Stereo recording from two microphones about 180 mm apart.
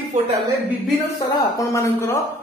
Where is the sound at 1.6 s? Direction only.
15° left (ahead or behind).